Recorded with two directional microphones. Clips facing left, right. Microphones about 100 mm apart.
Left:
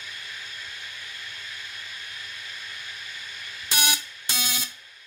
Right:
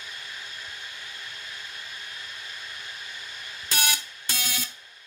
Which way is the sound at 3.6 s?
20° left (ahead or behind).